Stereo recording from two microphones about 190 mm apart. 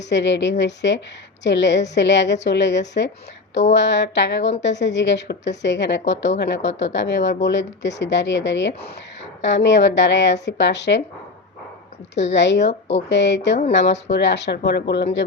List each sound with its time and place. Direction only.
0.0 s a woman's voice: 65° left (ahead or behind)
12.3 s a woman's voice: 70° left (ahead or behind)